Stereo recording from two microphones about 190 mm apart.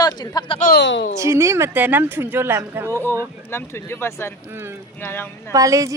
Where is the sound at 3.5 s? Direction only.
10° left (ahead or behind).